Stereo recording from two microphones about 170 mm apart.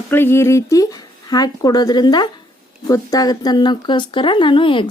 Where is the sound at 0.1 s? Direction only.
15° left (ahead or behind).